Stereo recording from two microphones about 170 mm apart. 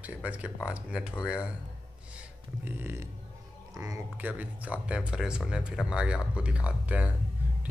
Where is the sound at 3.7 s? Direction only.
20° right (ahead or behind).